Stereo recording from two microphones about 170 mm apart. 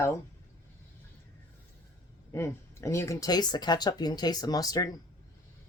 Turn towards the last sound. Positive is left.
turn(degrees=20)  # may be behind; listen again after turning